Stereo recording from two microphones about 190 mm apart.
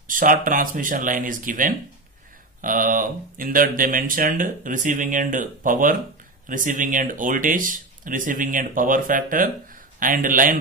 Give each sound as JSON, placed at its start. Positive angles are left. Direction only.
{"t": 0.1, "sound": "speech", "side_deg": -45}